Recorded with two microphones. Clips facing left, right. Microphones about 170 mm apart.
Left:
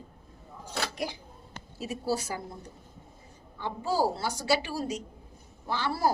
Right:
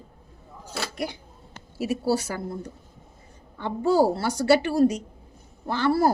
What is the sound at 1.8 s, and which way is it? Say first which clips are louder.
Speech: right 7 dB; 75° right (ahead or behind).